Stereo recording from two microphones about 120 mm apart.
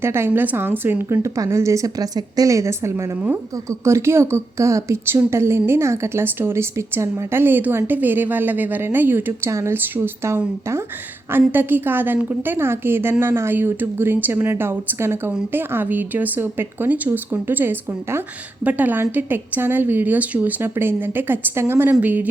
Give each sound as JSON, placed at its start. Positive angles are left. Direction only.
{"t": 0.0, "sound": "a woman's voice", "side_deg": -20}